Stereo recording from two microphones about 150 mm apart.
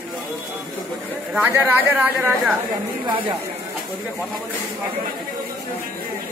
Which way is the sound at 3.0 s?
30° right (ahead or behind).